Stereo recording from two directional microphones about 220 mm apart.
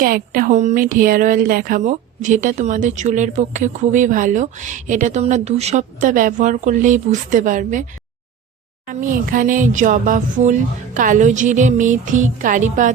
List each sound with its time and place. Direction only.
0.0 s speech: 40° right (ahead or behind)
8.9 s speech: 35° right (ahead or behind)